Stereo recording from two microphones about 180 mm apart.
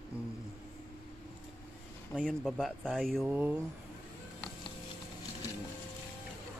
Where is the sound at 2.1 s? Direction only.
Centre (ahead or behind).